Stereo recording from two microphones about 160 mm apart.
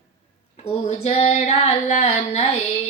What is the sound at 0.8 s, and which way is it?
Child singing, 40° left (ahead or behind).